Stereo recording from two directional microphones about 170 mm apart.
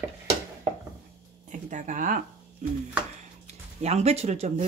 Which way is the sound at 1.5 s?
45° right (ahead or behind).